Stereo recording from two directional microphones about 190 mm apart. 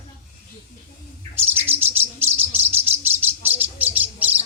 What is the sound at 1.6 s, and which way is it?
Bird, 10° right (ahead or behind).